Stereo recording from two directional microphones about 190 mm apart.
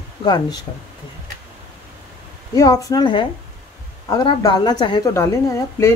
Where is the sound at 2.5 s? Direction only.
20° left (ahead or behind).